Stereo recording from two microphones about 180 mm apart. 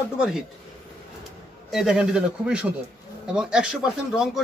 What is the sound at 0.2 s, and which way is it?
Speech, 5° right (ahead or behind).